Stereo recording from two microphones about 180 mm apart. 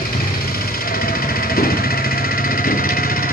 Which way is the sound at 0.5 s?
55° left (ahead or behind).